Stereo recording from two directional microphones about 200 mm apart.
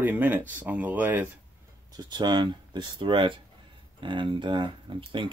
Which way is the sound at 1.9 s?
20° right (ahead or behind).